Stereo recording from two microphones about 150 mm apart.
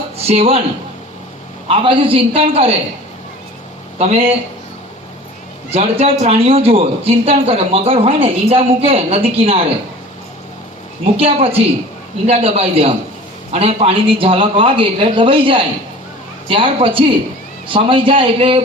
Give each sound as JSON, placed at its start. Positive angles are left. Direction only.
{"t": 0.2, "sound": "speech", "side_deg": -40}
{"t": 1.6, "sound": "a man's voice", "side_deg": -35}
{"t": 3.9, "sound": "speech", "side_deg": -45}
{"t": 5.7, "sound": "a man's voice", "side_deg": -45}
{"t": 11.0, "sound": "a man's voice", "side_deg": -40}